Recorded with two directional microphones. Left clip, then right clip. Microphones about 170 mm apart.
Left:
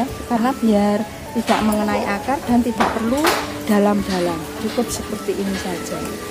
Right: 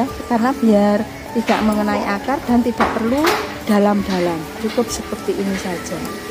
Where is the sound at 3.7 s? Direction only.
30° right (ahead or behind).